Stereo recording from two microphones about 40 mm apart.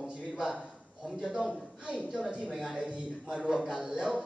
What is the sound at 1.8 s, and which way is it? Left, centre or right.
A man's voice, right.